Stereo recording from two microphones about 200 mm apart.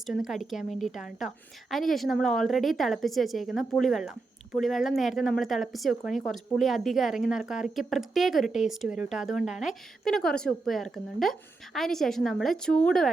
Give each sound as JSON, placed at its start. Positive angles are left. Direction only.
{"t": 0.0, "sound": "a woman's voice", "side_deg": 0}